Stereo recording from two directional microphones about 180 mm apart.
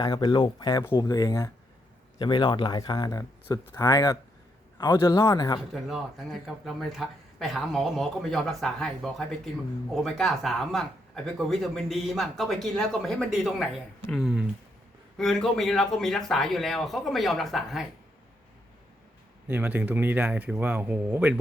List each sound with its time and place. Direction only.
0.0 s speech: 25° left (ahead or behind)
5.7 s speech: centre (ahead or behind)
19.5 s speech: 10° right (ahead or behind)